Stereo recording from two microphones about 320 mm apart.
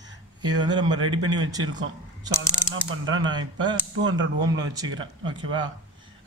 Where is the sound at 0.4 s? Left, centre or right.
Centre.